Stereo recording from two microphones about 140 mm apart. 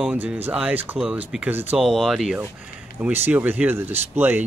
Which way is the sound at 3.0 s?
15° right (ahead or behind).